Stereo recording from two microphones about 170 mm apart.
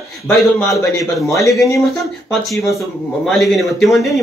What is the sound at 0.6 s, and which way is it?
A man's voice, 20° left (ahead or behind).